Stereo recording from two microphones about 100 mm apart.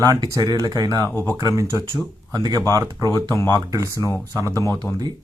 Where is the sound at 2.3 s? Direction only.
40° right (ahead or behind).